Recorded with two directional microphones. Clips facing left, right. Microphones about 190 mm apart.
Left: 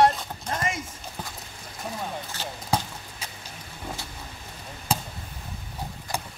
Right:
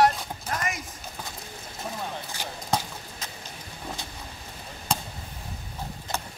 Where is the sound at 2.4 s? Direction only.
15° right (ahead or behind).